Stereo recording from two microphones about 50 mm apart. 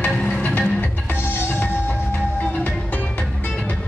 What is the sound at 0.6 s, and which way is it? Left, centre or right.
Music, left.